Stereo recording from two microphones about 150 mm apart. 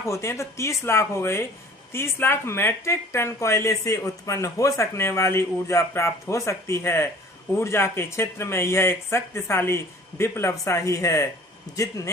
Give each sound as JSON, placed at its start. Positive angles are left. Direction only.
{"t": 0.0, "sound": "speech", "side_deg": 20}